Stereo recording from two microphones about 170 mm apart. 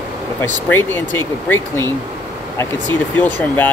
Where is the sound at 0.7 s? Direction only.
10° left (ahead or behind).